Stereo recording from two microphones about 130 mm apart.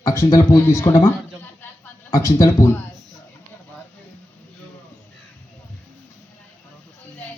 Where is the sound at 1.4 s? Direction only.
20° left (ahead or behind).